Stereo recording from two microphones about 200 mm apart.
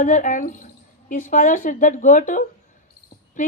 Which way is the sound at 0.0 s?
40° left (ahead or behind).